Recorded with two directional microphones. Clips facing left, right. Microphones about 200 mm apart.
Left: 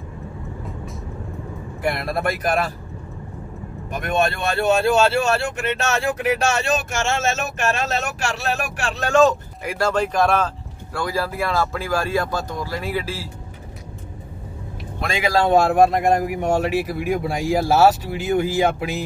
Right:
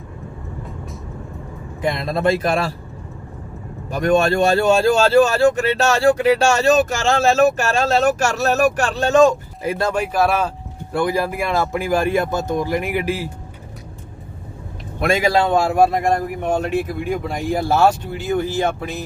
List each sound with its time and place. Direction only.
1.8 s speech: 20° right (ahead or behind)
3.9 s speech: 35° right (ahead or behind)
9.0 s speech: 15° right (ahead or behind)
10.9 s speech: 20° right (ahead or behind)
15.0 s speech: 50° right (ahead or behind)
15.6 s speech: centre (ahead or behind)